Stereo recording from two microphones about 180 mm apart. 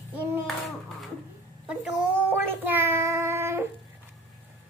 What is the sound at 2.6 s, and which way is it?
Child singing, 10° right (ahead or behind).